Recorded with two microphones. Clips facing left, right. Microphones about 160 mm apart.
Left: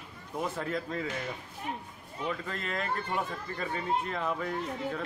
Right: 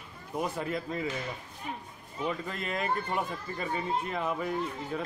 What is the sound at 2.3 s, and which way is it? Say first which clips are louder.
Speech: right 1 dB; 15° right (ahead or behind).